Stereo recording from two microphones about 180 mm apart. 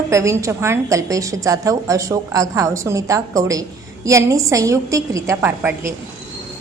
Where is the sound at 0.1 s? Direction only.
15° right (ahead or behind).